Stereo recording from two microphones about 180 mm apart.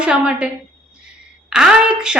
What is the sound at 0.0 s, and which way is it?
A woman's voice, 5° right (ahead or behind).